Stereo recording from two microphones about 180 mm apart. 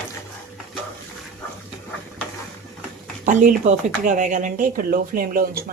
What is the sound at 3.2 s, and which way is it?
Speech, 45° right (ahead or behind).